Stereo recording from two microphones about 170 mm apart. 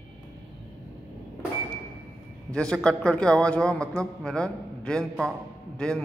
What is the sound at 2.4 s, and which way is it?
A man's voice, 5° left (ahead or behind).